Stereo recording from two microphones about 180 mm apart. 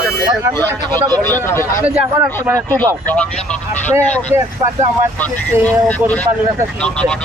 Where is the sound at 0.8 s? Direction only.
25° right (ahead or behind).